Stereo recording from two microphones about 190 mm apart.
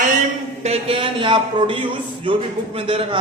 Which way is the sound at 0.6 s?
30° right (ahead or behind).